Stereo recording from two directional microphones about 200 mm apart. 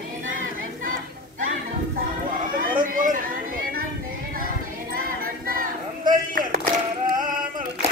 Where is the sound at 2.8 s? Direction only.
40° right (ahead or behind).